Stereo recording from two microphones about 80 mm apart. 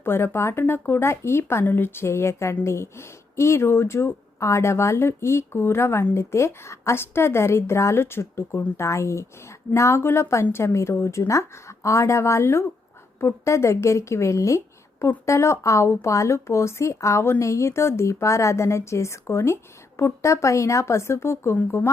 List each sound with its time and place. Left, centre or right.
0.0 s speech: left